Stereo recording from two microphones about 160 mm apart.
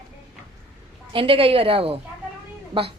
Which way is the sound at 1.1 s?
35° right (ahead or behind).